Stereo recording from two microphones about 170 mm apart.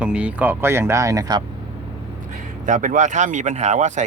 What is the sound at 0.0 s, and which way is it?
Speech, 5° right (ahead or behind).